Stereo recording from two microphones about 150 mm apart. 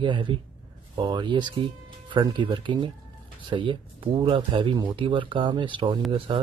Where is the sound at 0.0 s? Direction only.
30° right (ahead or behind).